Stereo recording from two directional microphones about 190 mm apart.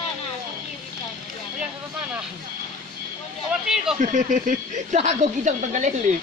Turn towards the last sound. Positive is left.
turn(degrees=-40)  # may be behind; listen again after turning